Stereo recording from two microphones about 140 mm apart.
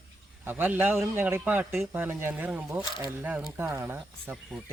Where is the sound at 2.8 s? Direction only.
30° left (ahead or behind).